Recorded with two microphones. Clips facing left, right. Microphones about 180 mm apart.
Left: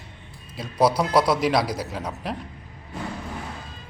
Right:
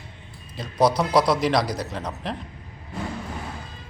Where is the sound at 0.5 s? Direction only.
5° left (ahead or behind).